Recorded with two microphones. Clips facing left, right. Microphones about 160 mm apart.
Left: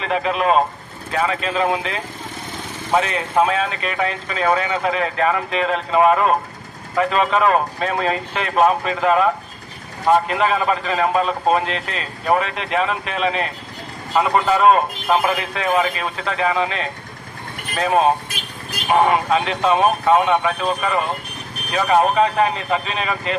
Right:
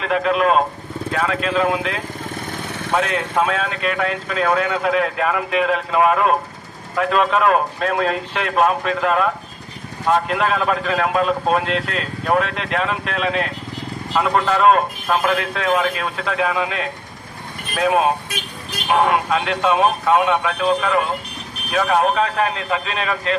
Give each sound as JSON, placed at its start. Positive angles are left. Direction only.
{"t": 0.0, "sound": "speech", "side_deg": 0}
{"t": 2.5, "sound": "vehicle", "side_deg": -65}
{"t": 2.9, "sound": "speech", "side_deg": 0}